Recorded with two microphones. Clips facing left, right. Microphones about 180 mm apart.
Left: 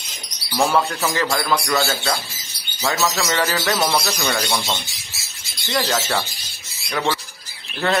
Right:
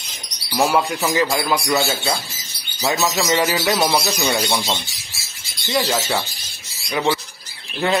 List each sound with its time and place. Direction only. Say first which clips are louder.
0.5 s a man's voice: right 1 dB; 5° right (ahead or behind)